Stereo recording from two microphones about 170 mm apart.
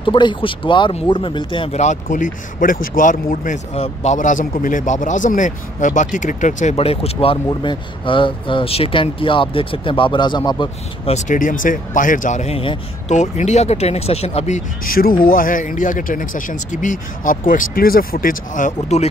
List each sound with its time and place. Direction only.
0.0 s speech: 30° left (ahead or behind)
11.1 s speech: 50° left (ahead or behind)
15.0 s speech: 60° left (ahead or behind)